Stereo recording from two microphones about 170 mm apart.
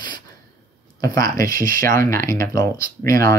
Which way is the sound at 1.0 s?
20° left (ahead or behind).